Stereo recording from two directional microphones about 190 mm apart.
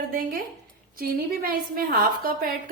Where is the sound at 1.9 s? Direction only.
50° right (ahead or behind).